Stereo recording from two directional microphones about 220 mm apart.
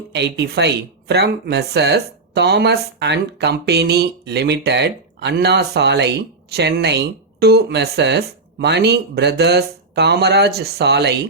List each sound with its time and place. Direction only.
0.1 s speech: 50° right (ahead or behind)